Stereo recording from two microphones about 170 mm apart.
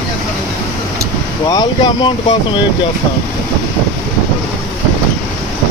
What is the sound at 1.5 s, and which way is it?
Speech, 25° left (ahead or behind).